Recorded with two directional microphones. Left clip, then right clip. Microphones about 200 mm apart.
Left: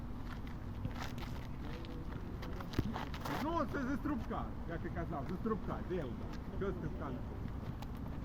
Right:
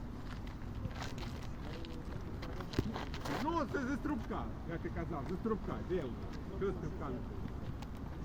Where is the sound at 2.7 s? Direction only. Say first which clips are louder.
Right 1 dB; 20° right (ahead or behind).